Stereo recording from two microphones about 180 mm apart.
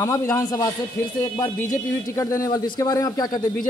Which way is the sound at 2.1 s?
20° left (ahead or behind).